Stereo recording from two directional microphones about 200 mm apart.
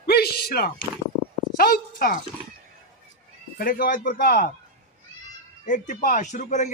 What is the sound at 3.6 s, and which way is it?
Speech, 45° left (ahead or behind).